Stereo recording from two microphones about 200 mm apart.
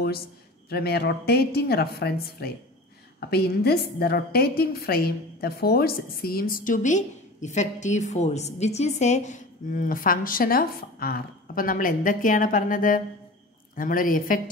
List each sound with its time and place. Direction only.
0.7 s a woman's voice: 50° left (ahead or behind)